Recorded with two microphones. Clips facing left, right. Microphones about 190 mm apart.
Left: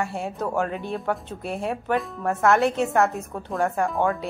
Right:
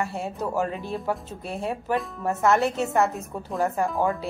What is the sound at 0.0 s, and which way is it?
Speech, centre (ahead or behind).